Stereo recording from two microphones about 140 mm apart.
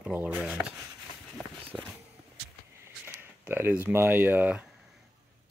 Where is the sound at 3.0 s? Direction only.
15° right (ahead or behind).